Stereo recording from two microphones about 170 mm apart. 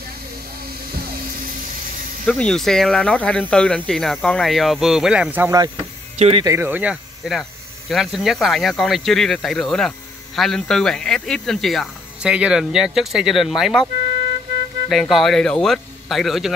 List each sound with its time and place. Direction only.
2.2 s speech: 5° left (ahead or behind); by 5.6 s 10° right (ahead or behind)
6.1 s speech: 35° right (ahead or behind)
6.4 s speech: 15° right (ahead or behind)
14.9 s speech: centre (ahead or behind)